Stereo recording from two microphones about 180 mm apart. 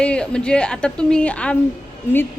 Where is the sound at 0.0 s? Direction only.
5° left (ahead or behind).